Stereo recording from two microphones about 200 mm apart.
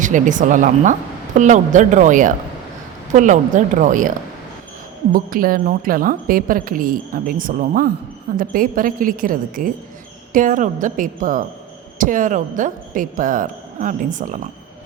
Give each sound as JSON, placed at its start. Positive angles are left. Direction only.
{"t": 0.0, "sound": "a woman's voice", "side_deg": -40}
{"t": 5.1, "sound": "a woman's voice", "side_deg": -45}